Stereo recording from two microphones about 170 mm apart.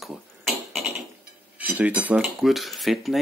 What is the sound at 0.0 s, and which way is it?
Beatboxing, centre (ahead or behind).